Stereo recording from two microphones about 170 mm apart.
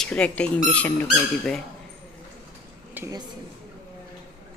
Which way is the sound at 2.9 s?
15° right (ahead or behind).